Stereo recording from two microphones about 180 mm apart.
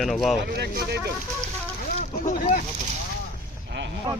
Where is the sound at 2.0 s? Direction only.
45° left (ahead or behind).